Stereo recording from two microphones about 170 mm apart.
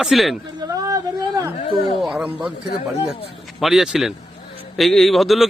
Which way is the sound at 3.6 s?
5° right (ahead or behind).